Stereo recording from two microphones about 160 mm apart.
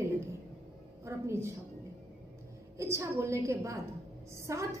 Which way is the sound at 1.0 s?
15° right (ahead or behind).